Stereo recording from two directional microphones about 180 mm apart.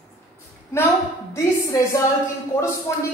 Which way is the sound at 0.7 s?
15° left (ahead or behind).